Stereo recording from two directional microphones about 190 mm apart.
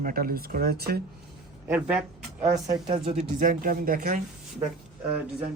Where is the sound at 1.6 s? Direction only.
10° right (ahead or behind).